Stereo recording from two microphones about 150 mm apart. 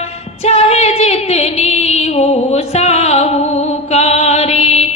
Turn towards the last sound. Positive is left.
turn(degrees=45)  # may be behind; listen again after turning